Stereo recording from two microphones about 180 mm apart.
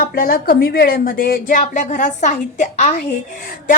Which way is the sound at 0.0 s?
55° left (ahead or behind).